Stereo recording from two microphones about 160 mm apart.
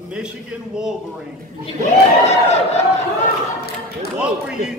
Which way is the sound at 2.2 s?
40° left (ahead or behind).